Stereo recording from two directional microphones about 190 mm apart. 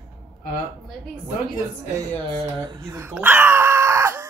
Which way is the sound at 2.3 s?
20° right (ahead or behind).